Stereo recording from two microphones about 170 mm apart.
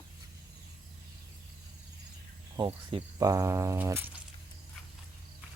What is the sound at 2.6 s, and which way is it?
Speech, 25° right (ahead or behind).